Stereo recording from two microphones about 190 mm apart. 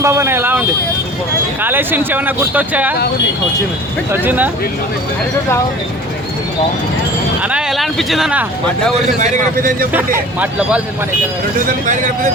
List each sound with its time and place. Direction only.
0.0 s speech: 15° right (ahead or behind)
1.6 s speech: 10° right (ahead or behind)
4.1 s speech: 10° right (ahead or behind)
7.4 s speech: 5° right (ahead or behind)
9.1 s a man's voice: 40° right (ahead or behind)
10.4 s speech: 5° right (ahead or behind)